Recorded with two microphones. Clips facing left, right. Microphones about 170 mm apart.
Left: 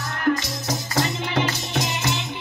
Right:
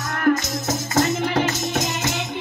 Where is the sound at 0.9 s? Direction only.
45° right (ahead or behind).